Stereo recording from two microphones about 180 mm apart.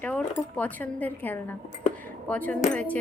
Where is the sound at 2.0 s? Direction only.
10° left (ahead or behind).